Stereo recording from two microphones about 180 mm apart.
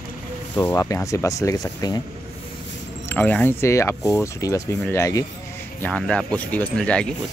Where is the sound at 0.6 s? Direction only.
15° left (ahead or behind).